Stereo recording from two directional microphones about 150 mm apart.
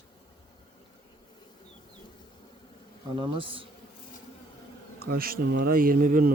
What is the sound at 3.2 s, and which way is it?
Speech, 35° right (ahead or behind).